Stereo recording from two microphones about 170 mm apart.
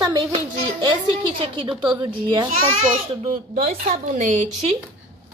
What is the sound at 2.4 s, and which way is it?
A child's voice, 40° right (ahead or behind).